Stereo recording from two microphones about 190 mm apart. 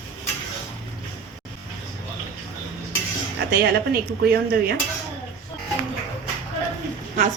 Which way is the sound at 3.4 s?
55° right (ahead or behind).